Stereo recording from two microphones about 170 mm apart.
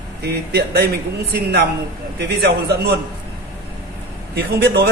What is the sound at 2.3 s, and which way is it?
Speech, 70° right (ahead or behind).